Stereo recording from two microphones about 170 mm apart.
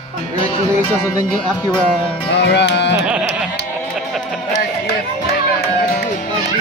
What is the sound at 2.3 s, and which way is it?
Speech, 80° left.